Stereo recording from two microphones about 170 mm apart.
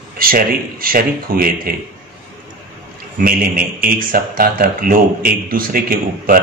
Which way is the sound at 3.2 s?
60° right (ahead or behind).